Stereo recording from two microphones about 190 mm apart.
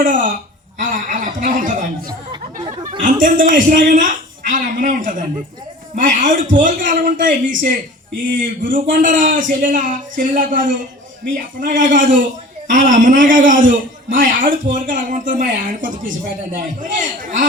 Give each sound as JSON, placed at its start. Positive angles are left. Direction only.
{"t": 0.0, "sound": "a sound", "side_deg": -45}
{"t": 0.8, "sound": "speech", "side_deg": -45}
{"t": 8.7, "sound": "speech", "side_deg": -45}